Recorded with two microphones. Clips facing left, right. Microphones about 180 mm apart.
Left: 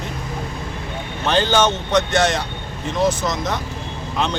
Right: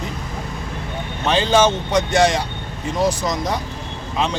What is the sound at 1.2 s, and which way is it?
Speech, centre (ahead or behind).